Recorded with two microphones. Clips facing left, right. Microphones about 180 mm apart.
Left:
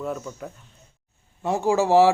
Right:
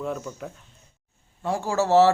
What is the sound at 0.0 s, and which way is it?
Speech, centre (ahead or behind).